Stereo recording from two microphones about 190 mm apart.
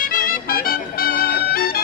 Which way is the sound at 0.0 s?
50° left (ahead or behind).